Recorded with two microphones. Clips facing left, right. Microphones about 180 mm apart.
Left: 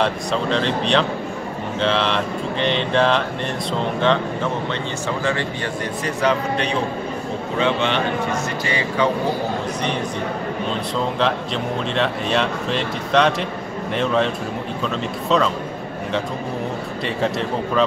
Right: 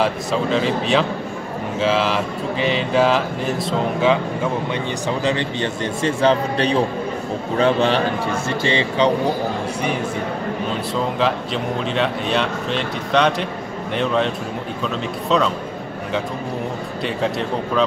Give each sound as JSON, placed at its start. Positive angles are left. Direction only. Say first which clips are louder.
{"t": 0.0, "sound": "speech", "louder": "right 1 dB", "side_deg": -5}
{"t": 5.2, "sound": "a man's voice", "louder": "right 3 dB", "side_deg": -20}
{"t": 8.6, "sound": "a man's voice", "louder": "right 3 dB", "side_deg": -25}
{"t": 11.1, "sound": "speech", "louder": "right 1 dB", "side_deg": 0}
{"t": 17.0, "sound": "speech", "louder": "even", "side_deg": 0}